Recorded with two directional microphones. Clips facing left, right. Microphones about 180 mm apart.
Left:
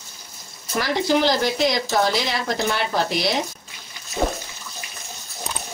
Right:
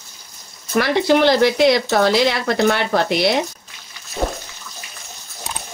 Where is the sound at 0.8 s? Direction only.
65° right (ahead or behind).